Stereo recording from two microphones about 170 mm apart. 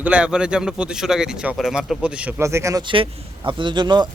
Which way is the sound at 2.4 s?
15° right (ahead or behind).